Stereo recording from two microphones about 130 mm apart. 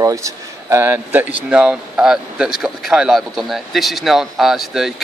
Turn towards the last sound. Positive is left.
turn(degrees=0)  # may be behind; listen again after turning